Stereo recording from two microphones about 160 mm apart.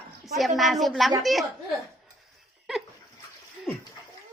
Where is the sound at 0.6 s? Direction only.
Centre (ahead or behind).